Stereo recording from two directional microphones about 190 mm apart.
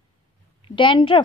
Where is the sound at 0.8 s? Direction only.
25° left (ahead or behind).